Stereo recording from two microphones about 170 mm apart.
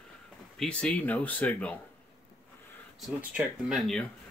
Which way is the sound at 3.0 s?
5° right (ahead or behind).